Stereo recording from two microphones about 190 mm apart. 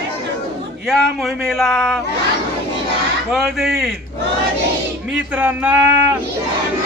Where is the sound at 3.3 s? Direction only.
Centre (ahead or behind).